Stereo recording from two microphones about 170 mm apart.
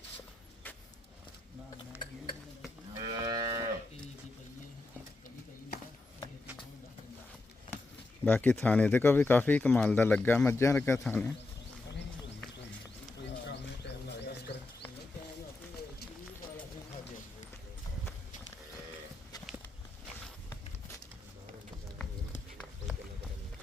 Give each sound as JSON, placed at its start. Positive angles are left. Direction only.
{"t": 2.9, "sound": "moo", "side_deg": -25}
{"t": 8.2, "sound": "speech", "side_deg": 10}
{"t": 13.2, "sound": "a sound", "side_deg": 90}